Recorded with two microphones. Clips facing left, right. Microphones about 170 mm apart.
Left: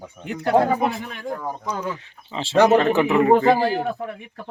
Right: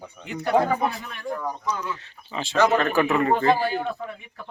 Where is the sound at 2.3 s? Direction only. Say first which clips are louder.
Left 5 dB; 25° left (ahead or behind).